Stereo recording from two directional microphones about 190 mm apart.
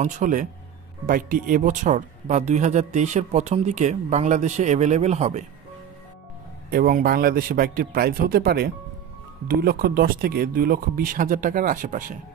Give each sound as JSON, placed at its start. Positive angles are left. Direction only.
{"t": 0.0, "sound": "speech", "side_deg": -40}
{"t": 6.7, "sound": "speech", "side_deg": -50}